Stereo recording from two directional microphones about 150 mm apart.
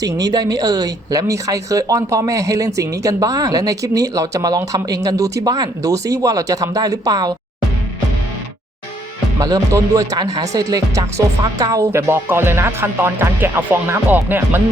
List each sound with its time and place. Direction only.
0.0 s speech: 25° right (ahead or behind)
9.4 s speech: 25° right (ahead or behind)